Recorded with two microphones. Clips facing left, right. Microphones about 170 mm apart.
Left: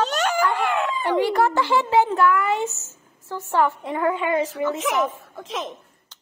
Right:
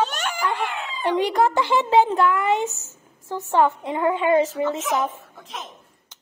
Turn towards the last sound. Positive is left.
turn(degrees=90)